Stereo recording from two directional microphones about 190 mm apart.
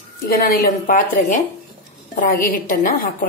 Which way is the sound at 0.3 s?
50° left (ahead or behind).